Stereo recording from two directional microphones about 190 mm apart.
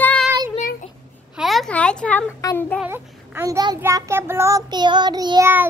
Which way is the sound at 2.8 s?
10° right (ahead or behind).